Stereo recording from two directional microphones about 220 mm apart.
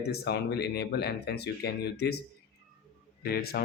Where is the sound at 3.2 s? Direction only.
45° left (ahead or behind).